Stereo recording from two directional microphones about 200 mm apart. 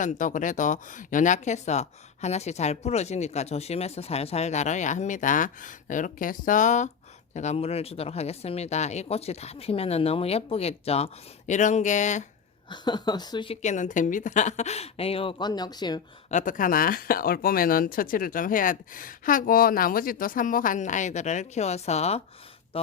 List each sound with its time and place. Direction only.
0.0 s speech: 40° left (ahead or behind)
12.6 s a woman's voice: 20° left (ahead or behind)
16.3 s speech: 40° left (ahead or behind)
22.7 s music: 30° left (ahead or behind)